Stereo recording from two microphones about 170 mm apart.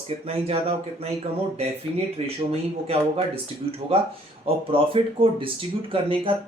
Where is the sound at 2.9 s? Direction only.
35° right (ahead or behind).